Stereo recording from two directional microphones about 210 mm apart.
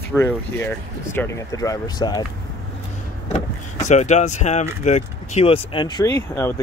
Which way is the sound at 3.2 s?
35° left (ahead or behind).